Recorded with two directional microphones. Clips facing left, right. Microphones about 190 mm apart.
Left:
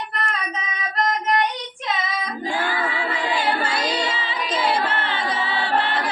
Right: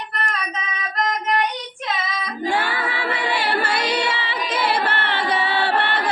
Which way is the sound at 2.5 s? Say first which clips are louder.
Right 2 dB; 70° right (ahead or behind).